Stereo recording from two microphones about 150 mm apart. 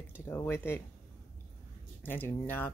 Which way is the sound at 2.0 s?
15° left (ahead or behind).